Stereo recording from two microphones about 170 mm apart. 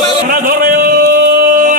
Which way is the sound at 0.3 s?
55° right (ahead or behind).